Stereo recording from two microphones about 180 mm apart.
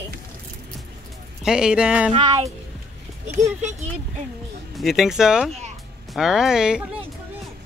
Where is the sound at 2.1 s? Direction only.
25° right (ahead or behind).